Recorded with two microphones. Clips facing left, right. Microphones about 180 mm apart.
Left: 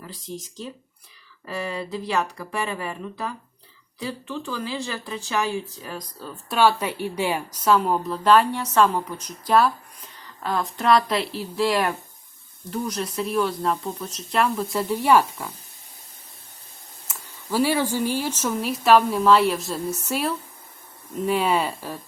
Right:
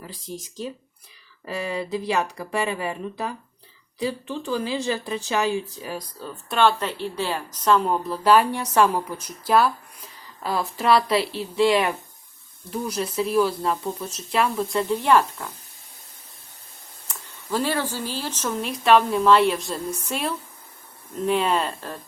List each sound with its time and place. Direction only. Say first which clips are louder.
0.0 s speech: even; 10° right (ahead or behind); by 15.5 s 10° left (ahead or behind)
17.1 s speech: even; 10° left (ahead or behind)